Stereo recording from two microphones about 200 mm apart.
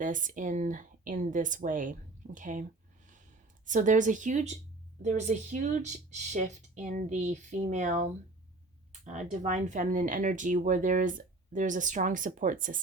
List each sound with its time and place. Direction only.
0.0 s speech: 40° right (ahead or behind)
3.7 s speech: 40° right (ahead or behind)